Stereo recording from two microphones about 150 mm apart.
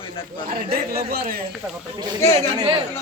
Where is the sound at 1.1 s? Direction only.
90° right.